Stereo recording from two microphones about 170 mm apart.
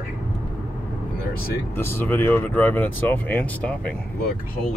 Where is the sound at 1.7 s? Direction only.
15° left (ahead or behind).